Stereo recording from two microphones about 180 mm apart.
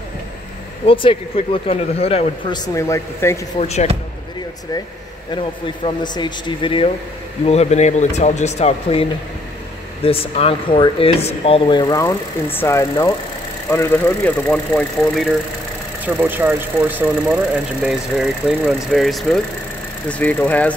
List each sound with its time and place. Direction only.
0.8 s speech: 30° left (ahead or behind)
3.5 s speech: 35° left (ahead or behind)
5.9 s speech: 25° left (ahead or behind)
10.0 s speech: 30° left (ahead or behind); by 15.2 s 10° left (ahead or behind)
16.1 s speech: 10° right (ahead or behind); by 20.7 s 10° left (ahead or behind)